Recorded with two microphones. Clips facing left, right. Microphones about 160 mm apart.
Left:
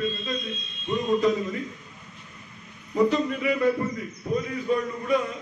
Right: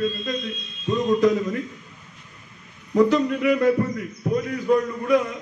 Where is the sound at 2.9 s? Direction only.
75° right (ahead or behind).